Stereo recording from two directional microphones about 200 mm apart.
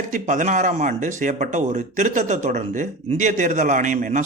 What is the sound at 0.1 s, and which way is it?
Speech, 40° right (ahead or behind).